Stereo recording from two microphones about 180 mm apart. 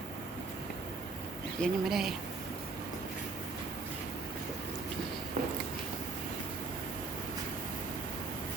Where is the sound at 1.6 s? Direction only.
Centre (ahead or behind).